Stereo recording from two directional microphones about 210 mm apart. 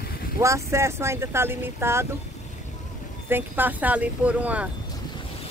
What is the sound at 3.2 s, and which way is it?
Speech, 10° right (ahead or behind).